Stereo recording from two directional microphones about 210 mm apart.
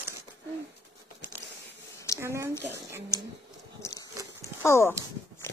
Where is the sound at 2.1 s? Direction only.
15° right (ahead or behind).